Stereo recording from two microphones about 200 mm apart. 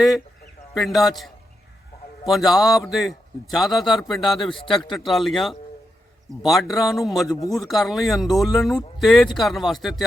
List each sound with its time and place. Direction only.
0.7 s a man's voice: centre (ahead or behind)
4.4 s a man's voice: 25° left (ahead or behind)
4.9 s a man's voice: centre (ahead or behind)